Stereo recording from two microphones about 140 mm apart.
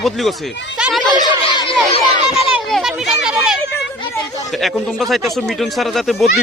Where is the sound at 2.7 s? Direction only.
5° right (ahead or behind).